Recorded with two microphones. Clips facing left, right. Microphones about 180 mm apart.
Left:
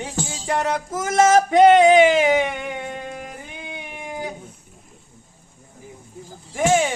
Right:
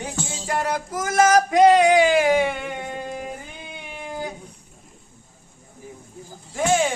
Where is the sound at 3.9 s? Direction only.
15° left (ahead or behind).